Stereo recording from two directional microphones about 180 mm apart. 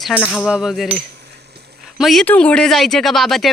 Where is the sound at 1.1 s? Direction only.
70° right (ahead or behind).